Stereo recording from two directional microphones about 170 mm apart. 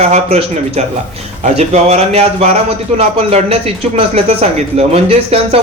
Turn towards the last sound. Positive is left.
turn(degrees=-35)  # may be behind; listen again after turning